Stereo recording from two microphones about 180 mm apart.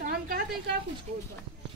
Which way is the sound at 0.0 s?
55° right (ahead or behind).